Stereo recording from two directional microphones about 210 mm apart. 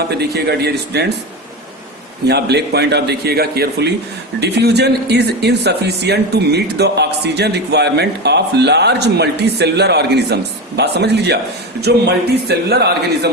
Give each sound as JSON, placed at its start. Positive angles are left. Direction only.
{"t": 0.2, "sound": "speech", "side_deg": -50}
{"t": 2.2, "sound": "speech", "side_deg": -50}